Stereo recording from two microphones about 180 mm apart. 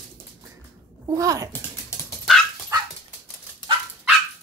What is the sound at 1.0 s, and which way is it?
Speech, 20° right (ahead or behind).